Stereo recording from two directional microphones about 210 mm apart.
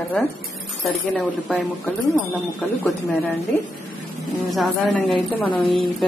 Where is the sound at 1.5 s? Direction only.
Centre (ahead or behind).